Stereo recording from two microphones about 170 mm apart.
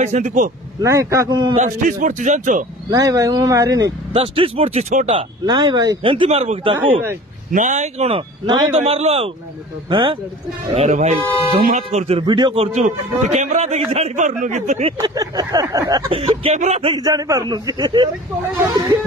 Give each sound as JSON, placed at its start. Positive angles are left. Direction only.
{"t": 0.0, "sound": "speech", "side_deg": -45}
{"t": 0.7, "sound": "a man's voice", "side_deg": -20}
{"t": 1.6, "sound": "speech", "side_deg": -50}
{"t": 2.9, "sound": "a man's voice", "side_deg": -20}
{"t": 4.1, "sound": "a man's voice", "side_deg": -35}
{"t": 6.2, "sound": "a man's voice", "side_deg": -40}
{"t": 7.5, "sound": "a man's voice", "side_deg": -45}
{"t": 10.7, "sound": "speech", "side_deg": -40}
{"t": 12.3, "sound": "a man's voice", "side_deg": -30}
{"t": 12.7, "sound": "a man's voice", "side_deg": -45}
{"t": 15.0, "sound": "a man's voice", "side_deg": -25}
{"t": 16.1, "sound": "a man's voice", "side_deg": -35}
{"t": 16.9, "sound": "a man's voice", "side_deg": -20}